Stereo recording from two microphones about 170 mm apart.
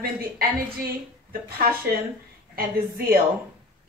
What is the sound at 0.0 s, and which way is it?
Speech, 60° right (ahead or behind).